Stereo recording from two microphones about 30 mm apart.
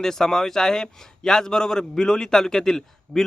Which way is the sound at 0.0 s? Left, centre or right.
Centre.